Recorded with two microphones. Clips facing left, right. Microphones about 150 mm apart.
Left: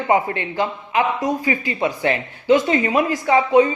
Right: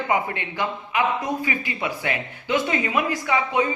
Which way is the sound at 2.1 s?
30° left (ahead or behind).